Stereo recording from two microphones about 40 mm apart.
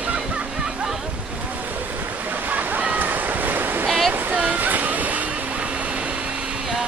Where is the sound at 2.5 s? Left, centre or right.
Right.